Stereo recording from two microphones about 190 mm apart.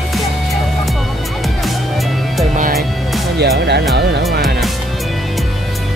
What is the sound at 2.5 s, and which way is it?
Music, 45° right (ahead or behind).